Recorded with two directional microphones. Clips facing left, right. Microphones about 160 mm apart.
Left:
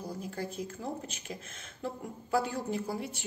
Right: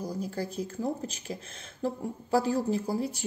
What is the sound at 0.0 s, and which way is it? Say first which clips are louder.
A woman's voice: right 4 dB; 40° right (ahead or behind).